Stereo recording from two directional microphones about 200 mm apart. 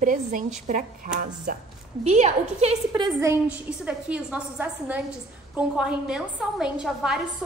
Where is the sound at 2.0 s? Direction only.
35° right (ahead or behind).